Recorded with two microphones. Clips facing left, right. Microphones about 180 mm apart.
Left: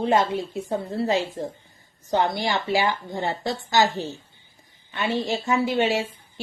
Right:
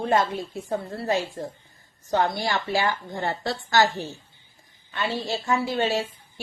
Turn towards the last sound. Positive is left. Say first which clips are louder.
# left 1 dB
turn(degrees=15)  # may be behind; listen again after turning